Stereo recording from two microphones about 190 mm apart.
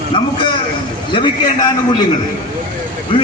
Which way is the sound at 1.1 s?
20° left (ahead or behind).